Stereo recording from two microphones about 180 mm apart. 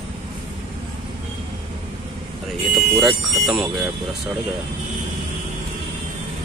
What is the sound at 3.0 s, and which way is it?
Speech, centre (ahead or behind).